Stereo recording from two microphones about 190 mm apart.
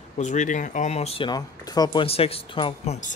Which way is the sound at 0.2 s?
40° left (ahead or behind).